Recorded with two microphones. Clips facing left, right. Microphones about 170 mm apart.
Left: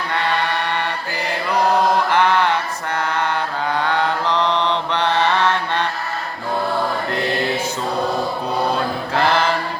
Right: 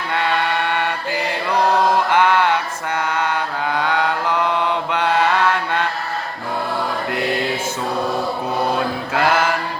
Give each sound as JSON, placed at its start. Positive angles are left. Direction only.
{"t": 2.0, "sound": "mantra", "side_deg": -10}
{"t": 3.8, "sound": "mantra", "side_deg": -10}
{"t": 9.1, "sound": "mantra", "side_deg": -5}